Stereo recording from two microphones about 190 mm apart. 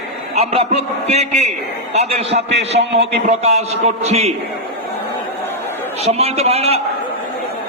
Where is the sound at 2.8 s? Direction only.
65° right (ahead or behind).